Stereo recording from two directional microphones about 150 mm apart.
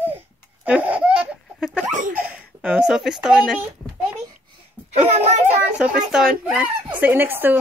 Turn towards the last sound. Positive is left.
turn(degrees=-15)  # may be behind; listen again after turning